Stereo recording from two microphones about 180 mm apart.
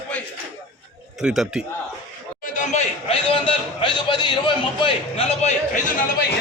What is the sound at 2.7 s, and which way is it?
A man's voice, 30° left (ahead or behind).